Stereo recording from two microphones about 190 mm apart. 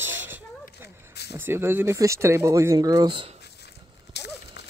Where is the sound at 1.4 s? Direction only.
10° right (ahead or behind).